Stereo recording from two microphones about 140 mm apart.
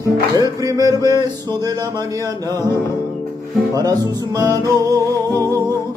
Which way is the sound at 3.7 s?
25° right (ahead or behind).